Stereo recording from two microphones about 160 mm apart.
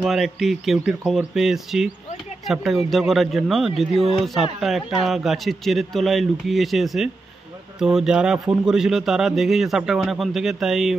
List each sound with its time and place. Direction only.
0.0 s a man's voice: centre (ahead or behind)